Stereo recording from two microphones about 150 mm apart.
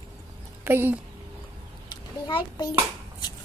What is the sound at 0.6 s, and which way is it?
Speech, 15° right (ahead or behind).